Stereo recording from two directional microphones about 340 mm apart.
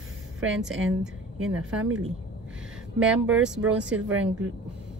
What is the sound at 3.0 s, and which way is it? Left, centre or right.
Speech, centre.